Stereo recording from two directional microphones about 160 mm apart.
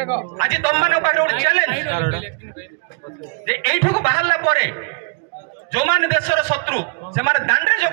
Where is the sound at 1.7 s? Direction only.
40° right (ahead or behind).